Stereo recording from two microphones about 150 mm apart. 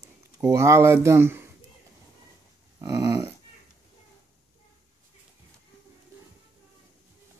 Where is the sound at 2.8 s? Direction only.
20° right (ahead or behind).